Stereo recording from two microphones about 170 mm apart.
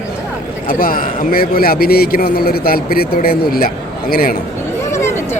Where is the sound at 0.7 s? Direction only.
55° left (ahead or behind).